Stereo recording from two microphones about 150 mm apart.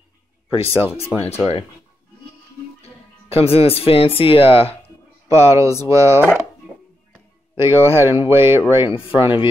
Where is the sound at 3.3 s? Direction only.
40° left (ahead or behind).